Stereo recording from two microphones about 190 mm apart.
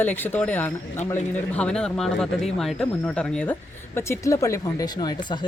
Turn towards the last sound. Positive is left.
turn(degrees=25)  # may be behind; listen again after turning